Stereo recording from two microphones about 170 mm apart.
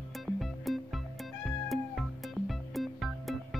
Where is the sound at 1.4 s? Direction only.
Centre (ahead or behind).